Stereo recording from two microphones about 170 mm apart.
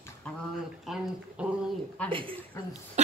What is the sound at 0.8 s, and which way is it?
Speech, centre (ahead or behind).